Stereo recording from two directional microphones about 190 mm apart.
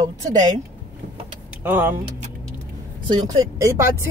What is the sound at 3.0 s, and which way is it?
Speech, 20° right (ahead or behind).